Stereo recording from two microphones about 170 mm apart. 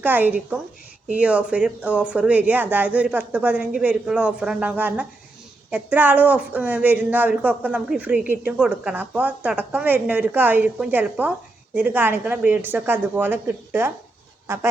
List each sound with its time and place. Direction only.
0.0 s speech: 10° right (ahead or behind)